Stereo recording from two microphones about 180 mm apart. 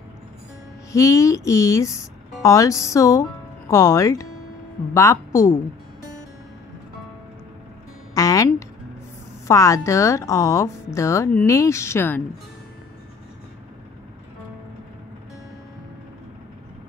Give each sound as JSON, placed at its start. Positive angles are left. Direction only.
{"t": 0.9, "sound": "a woman's voice", "side_deg": 15}
{"t": 8.1, "sound": "music", "side_deg": 20}
{"t": 9.5, "sound": "a woman's voice", "side_deg": 15}